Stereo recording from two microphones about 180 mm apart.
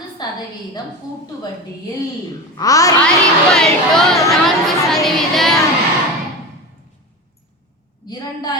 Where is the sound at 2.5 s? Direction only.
20° left (ahead or behind).